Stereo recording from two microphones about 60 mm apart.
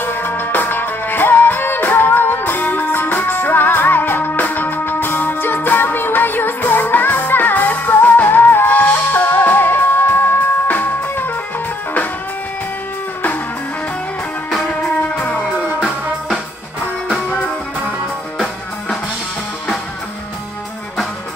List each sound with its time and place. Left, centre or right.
0.0 s music: left
14.7 s music: left